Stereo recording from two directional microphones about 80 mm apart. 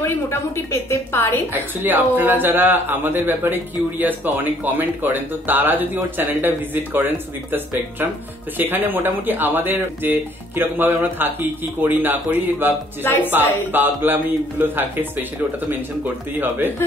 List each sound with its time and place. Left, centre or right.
0.0 s a woman's voice: left
1.5 s speech: right
8.5 s speech: right
13.0 s a woman's voice: left
13.7 s speech: right